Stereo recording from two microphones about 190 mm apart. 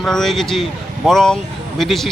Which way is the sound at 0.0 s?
Centre (ahead or behind).